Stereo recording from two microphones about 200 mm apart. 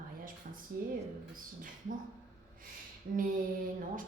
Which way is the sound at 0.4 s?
45° right (ahead or behind).